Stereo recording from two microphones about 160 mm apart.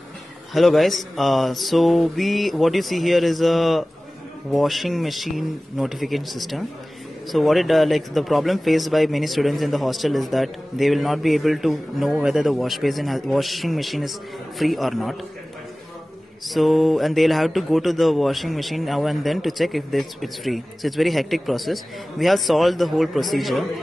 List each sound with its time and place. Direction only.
0.5 s speech: centre (ahead or behind)
16.4 s speech: centre (ahead or behind)